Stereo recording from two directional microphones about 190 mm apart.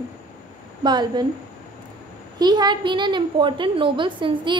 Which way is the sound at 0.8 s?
25° right (ahead or behind).